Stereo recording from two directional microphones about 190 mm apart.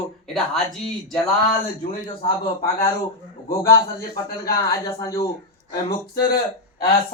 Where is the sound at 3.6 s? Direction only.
15° left (ahead or behind).